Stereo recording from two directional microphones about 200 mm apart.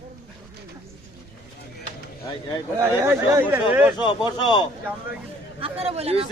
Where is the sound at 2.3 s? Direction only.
25° left (ahead or behind).